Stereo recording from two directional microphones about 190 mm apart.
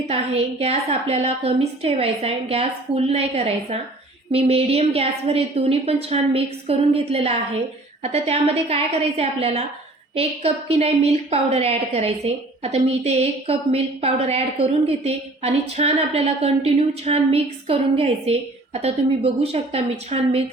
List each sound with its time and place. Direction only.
0.1 s a woman's voice: 35° right (ahead or behind)